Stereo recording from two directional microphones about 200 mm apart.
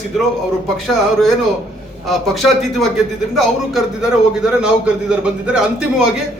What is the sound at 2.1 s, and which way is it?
Speech, centre (ahead or behind).